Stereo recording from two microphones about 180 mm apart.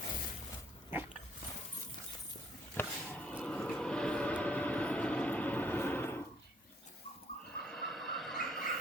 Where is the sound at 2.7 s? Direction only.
10° left (ahead or behind).